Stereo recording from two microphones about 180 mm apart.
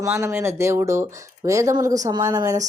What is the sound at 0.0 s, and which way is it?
Speech, 15° right (ahead or behind).